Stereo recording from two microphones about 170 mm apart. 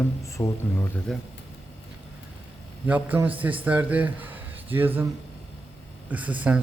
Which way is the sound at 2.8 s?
10° right (ahead or behind).